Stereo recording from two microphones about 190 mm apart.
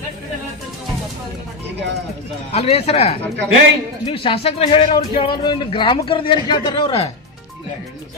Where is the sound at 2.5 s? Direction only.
35° left (ahead or behind).